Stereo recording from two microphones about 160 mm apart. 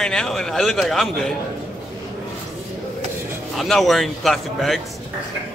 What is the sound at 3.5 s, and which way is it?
A man's voice, centre (ahead or behind).